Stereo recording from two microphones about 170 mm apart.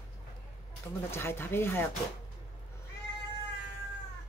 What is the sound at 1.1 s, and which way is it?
Speech, 15° left (ahead or behind).